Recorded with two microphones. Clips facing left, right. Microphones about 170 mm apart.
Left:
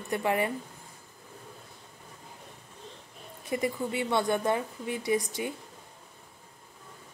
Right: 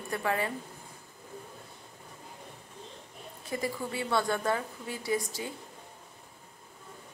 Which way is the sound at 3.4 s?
20° left (ahead or behind).